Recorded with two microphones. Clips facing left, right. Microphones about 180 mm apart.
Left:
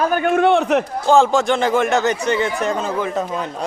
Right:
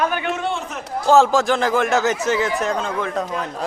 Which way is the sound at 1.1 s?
Centre (ahead or behind).